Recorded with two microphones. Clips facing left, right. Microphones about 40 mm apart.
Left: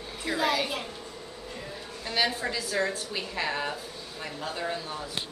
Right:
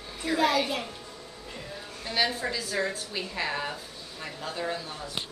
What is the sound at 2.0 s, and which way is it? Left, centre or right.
A woman's voice, centre.